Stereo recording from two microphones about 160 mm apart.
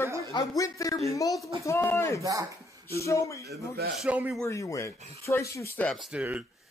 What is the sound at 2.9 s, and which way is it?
Speech, 20° left (ahead or behind).